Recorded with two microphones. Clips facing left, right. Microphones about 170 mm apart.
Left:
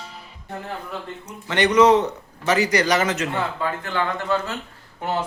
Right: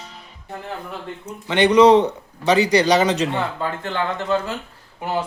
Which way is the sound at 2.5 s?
30° right (ahead or behind).